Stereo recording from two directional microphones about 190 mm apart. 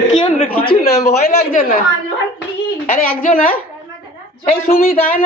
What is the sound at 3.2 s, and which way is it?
Speech, 45° left (ahead or behind).